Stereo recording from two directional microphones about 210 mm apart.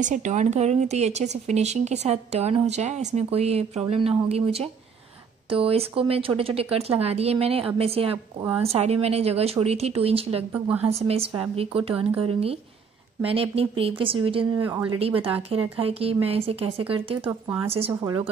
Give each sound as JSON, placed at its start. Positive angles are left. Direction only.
{"t": 0.0, "sound": "speech", "side_deg": -35}
{"t": 13.2, "sound": "speech", "side_deg": -25}
{"t": 14.6, "sound": "speech", "side_deg": -10}
{"t": 15.0, "sound": "speech", "side_deg": -25}